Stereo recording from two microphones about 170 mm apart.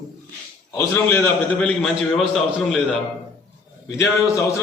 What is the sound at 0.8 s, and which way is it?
A man's voice, 10° left (ahead or behind).